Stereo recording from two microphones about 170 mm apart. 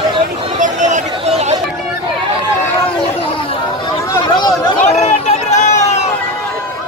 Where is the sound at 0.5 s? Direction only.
45° right (ahead or behind).